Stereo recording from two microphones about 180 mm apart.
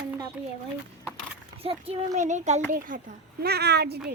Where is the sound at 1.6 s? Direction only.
30° right (ahead or behind); by 3.1 s 50° right (ahead or behind).